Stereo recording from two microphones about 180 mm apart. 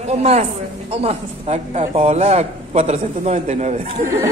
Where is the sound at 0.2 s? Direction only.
35° right (ahead or behind).